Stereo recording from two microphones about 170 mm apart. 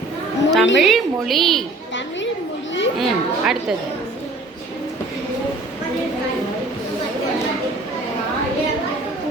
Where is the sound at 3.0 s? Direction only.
5° right (ahead or behind).